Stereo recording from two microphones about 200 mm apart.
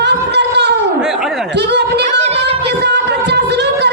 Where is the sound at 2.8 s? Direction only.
55° right (ahead or behind).